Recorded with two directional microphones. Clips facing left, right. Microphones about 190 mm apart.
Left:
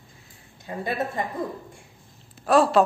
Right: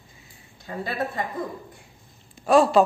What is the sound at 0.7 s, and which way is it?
Speech, 20° left (ahead or behind).